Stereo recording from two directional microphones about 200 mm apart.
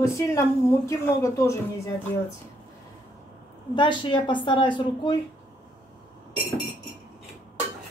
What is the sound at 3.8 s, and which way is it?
A woman's voice, 25° left (ahead or behind).